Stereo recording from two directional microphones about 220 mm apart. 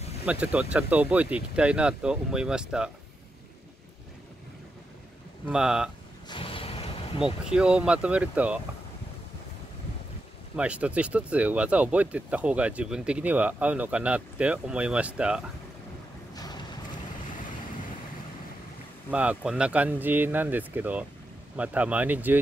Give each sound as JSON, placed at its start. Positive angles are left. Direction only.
{"t": 0.2, "sound": "speech", "side_deg": -5}
{"t": 5.5, "sound": "speech", "side_deg": -5}
{"t": 6.2, "sound": "a sound", "side_deg": 25}
{"t": 7.5, "sound": "speech", "side_deg": -5}
{"t": 10.5, "sound": "speech", "side_deg": -5}
{"t": 16.3, "sound": "boat", "side_deg": 20}
{"t": 19.0, "sound": "speech", "side_deg": -5}